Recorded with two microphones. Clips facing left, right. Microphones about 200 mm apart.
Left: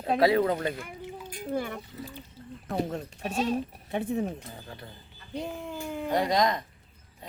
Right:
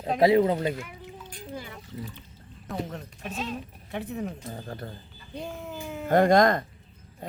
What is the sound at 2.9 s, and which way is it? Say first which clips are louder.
Speech: left 5 dB; 30° left (ahead or behind).